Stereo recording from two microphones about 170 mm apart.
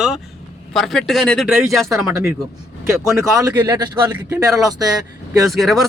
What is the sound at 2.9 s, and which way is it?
Speech, 15° right (ahead or behind).